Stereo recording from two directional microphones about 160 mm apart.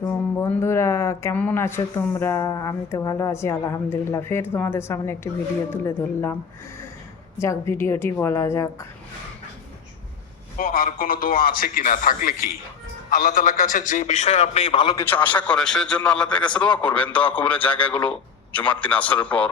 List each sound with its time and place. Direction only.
0.1 s speech: 10° left (ahead or behind)
7.3 s speech: 15° left (ahead or behind)
10.6 s a man's voice: 60° left (ahead or behind); by 14.9 s 30° left (ahead or behind)
14.9 s a man's voice: 10° left (ahead or behind)